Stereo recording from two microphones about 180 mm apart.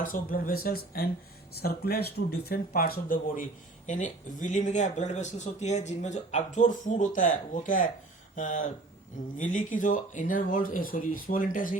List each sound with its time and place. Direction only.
0.0 s speech: 50° left (ahead or behind)